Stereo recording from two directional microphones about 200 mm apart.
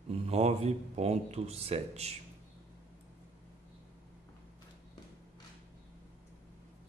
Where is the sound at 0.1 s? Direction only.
30° right (ahead or behind).